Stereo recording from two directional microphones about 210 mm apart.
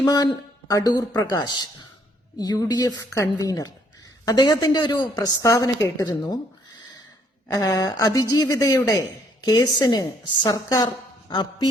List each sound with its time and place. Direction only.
0.0 s a woman's voice: 20° left (ahead or behind)
7.4 s a woman's voice: 15° left (ahead or behind)